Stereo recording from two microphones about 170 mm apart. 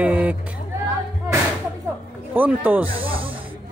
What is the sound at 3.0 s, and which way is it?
Snake, 30° right (ahead or behind).